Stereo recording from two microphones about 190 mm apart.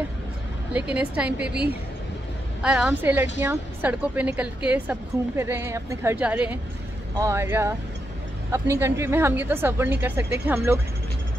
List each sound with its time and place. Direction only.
0.7 s a woman's voice: 5° right (ahead or behind)
2.6 s a woman's voice: 5° right (ahead or behind)